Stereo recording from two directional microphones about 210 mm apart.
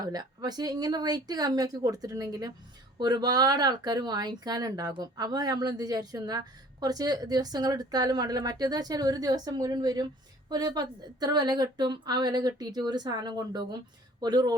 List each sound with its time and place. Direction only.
0.0 s speech: 20° right (ahead or behind)